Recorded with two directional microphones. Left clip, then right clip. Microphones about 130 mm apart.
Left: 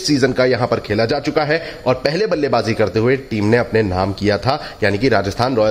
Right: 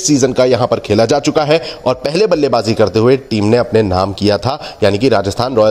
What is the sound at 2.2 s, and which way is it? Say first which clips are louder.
Speech: right 7 dB; 25° right (ahead or behind).